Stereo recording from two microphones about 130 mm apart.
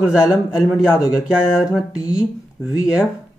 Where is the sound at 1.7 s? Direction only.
30° left (ahead or behind).